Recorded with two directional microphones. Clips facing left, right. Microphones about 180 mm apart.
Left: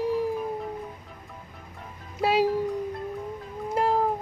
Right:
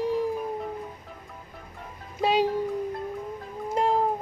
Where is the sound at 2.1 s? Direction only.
5° left (ahead or behind).